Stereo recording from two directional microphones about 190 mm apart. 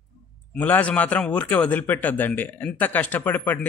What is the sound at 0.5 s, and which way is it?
A man's voice, 10° left (ahead or behind).